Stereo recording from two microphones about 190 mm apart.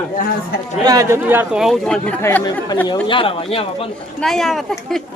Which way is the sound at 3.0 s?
25° left (ahead or behind).